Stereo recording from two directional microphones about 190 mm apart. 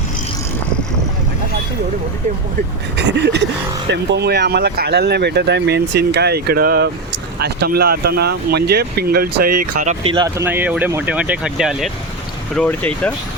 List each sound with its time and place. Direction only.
3.0 s speech: 65° right (ahead or behind); by 10.2 s 30° right (ahead or behind)
10.2 s speech: 15° right (ahead or behind)
12.5 s speech: 10° left (ahead or behind)